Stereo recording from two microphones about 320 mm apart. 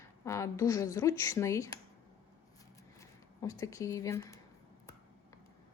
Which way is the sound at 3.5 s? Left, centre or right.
Centre.